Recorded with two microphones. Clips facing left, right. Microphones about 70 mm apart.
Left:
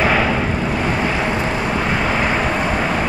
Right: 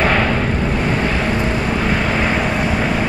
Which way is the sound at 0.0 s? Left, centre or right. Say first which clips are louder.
Even; centre.